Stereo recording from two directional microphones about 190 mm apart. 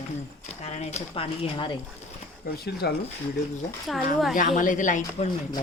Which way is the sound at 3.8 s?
Centre (ahead or behind).